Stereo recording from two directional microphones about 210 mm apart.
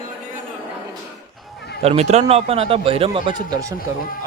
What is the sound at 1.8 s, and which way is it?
Speech, 30° right (ahead or behind).